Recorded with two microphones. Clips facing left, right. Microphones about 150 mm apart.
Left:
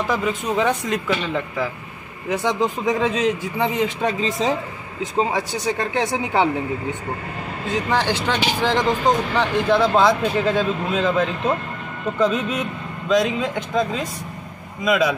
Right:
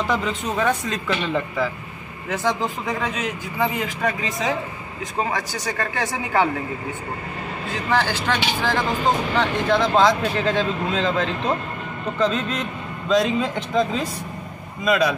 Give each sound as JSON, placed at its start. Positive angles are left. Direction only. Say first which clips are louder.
{"t": 0.1, "sound": "a man's voice", "louder": "left 2 dB", "side_deg": 10}
{"t": 7.6, "sound": "a man's voice", "louder": "left 2 dB", "side_deg": 20}